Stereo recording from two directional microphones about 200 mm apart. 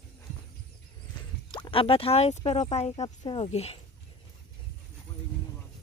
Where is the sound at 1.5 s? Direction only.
25° left (ahead or behind).